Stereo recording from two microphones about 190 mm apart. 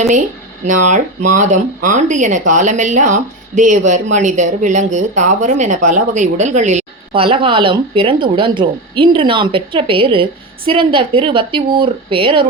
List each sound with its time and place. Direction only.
0.6 s a woman's voice: 40° right (ahead or behind)